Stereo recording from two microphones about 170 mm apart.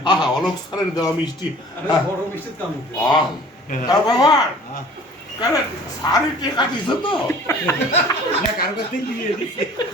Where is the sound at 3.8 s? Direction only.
20° left (ahead or behind).